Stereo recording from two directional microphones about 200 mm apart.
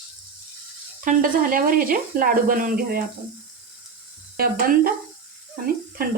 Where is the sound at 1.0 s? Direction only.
45° right (ahead or behind).